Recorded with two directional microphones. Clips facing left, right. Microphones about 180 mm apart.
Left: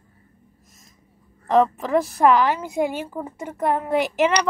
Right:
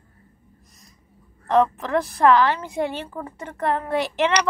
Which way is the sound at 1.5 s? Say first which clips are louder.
Left 1 dB; 10° left (ahead or behind).